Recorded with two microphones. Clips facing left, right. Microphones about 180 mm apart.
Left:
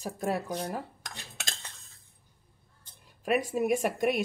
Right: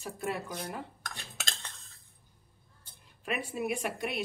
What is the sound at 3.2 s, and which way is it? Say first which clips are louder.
Speech: left 7 dB; 40° left (ahead or behind).